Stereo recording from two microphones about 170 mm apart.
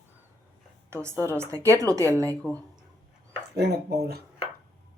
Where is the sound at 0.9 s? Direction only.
15° right (ahead or behind).